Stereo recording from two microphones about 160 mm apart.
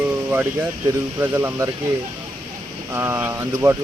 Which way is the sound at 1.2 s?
15° right (ahead or behind).